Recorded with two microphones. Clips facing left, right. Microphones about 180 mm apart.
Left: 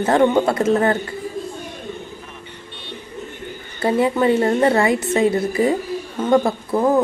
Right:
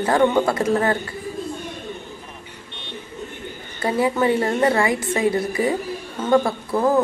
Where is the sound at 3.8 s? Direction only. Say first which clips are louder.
Left 3 dB; 25° left (ahead or behind).